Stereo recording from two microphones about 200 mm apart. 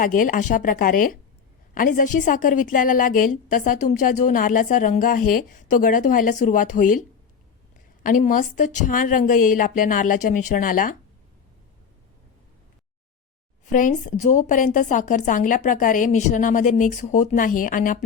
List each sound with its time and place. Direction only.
0.0 s a woman's voice: 40° left (ahead or behind)
8.0 s a woman's voice: 40° left (ahead or behind)
13.7 s a woman's voice: 40° left (ahead or behind)